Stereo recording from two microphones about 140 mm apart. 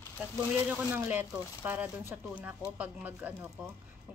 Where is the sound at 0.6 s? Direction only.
10° right (ahead or behind).